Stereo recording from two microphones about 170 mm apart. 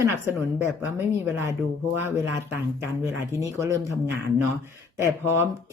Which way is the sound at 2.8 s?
15° right (ahead or behind).